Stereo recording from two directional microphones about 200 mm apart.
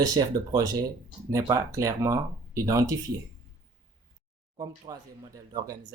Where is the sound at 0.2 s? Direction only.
20° right (ahead or behind).